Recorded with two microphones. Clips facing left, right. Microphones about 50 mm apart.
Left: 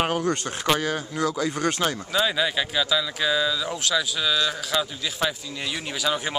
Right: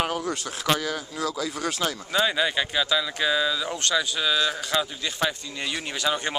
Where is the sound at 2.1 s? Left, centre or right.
Centre.